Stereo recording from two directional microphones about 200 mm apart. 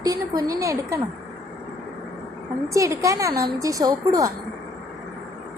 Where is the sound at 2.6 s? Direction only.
15° right (ahead or behind).